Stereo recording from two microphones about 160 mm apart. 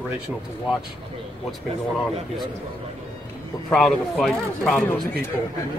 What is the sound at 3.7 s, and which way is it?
Speech, centre (ahead or behind).